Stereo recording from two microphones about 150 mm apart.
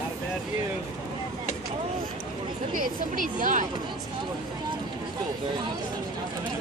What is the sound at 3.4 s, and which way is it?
Speech, 60° right (ahead or behind).